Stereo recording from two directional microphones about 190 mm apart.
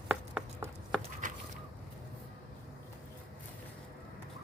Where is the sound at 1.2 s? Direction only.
45° right (ahead or behind).